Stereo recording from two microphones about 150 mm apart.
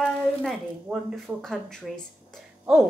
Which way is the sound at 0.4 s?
5° right (ahead or behind).